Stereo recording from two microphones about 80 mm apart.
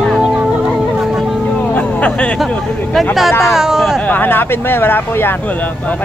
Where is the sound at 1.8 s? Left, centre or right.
Centre.